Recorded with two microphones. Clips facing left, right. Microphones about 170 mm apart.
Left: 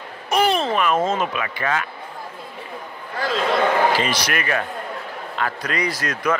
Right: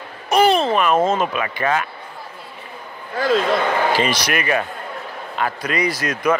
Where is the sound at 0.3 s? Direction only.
30° right (ahead or behind).